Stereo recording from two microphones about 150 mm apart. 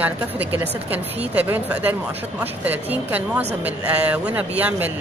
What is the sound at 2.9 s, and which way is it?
A man's voice, 10° right (ahead or behind).